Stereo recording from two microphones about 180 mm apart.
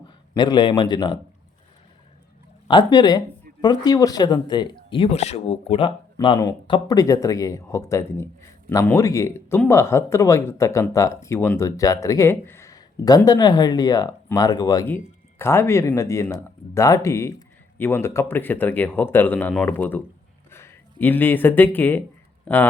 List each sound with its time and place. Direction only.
0.3 s speech: 25° left (ahead or behind)
2.6 s speech: 25° left (ahead or behind)
6.1 s speech: 20° left (ahead or behind)